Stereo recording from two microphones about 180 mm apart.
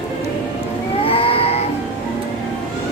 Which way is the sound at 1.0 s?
30° left (ahead or behind).